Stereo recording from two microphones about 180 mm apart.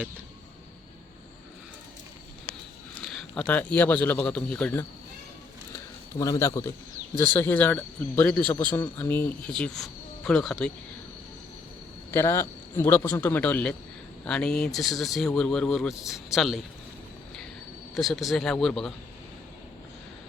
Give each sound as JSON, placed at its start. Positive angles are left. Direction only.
{"t": 2.9, "sound": "speech", "side_deg": 5}
{"t": 5.7, "sound": "a sound", "side_deg": 20}
{"t": 7.3, "sound": "a man's voice", "side_deg": 10}
{"t": 12.1, "sound": "a man's voice", "side_deg": 15}
{"t": 17.9, "sound": "speech", "side_deg": 0}